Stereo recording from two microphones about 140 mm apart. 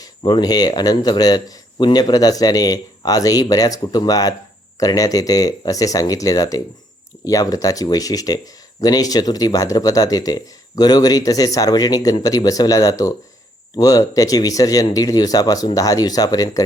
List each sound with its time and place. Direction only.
0.2 s speech: 35° left (ahead or behind)